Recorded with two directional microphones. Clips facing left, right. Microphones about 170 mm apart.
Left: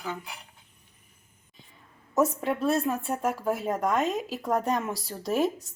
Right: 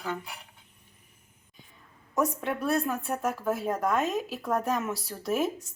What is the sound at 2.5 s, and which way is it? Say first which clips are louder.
A woman's voice: left 2 dB; 25° left (ahead or behind).